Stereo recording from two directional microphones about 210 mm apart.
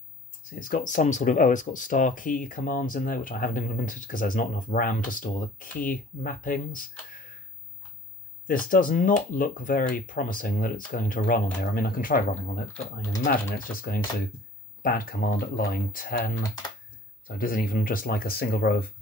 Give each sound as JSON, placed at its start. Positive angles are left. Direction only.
{"t": 0.5, "sound": "speech", "side_deg": 40}
{"t": 8.5, "sound": "speech", "side_deg": 40}
{"t": 17.4, "sound": "speech", "side_deg": 45}